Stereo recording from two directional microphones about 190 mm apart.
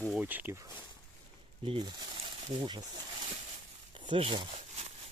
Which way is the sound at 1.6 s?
25° right (ahead or behind).